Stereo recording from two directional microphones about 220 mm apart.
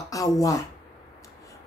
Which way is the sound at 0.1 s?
15° left (ahead or behind).